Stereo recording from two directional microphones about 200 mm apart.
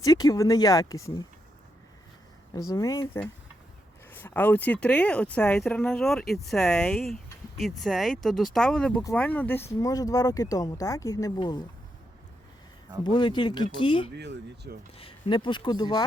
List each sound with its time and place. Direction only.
0.0 s speech: 15° left (ahead or behind)
2.6 s speech: 15° left (ahead or behind)
13.1 s speech: 25° left (ahead or behind)
14.2 s speech: 60° right (ahead or behind)
14.9 s speech: 25° left (ahead or behind)